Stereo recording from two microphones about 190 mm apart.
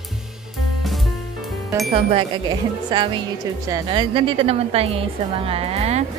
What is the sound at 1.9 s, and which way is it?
A woman's voice, 25° right (ahead or behind).